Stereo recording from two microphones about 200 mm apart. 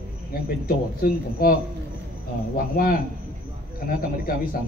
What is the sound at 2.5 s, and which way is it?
Speech, 45° left (ahead or behind).